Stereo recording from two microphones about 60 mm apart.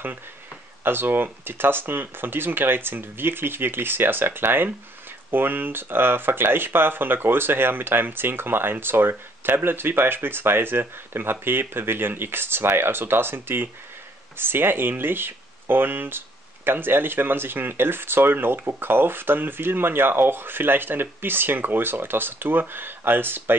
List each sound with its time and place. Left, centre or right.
0.8 s speech: right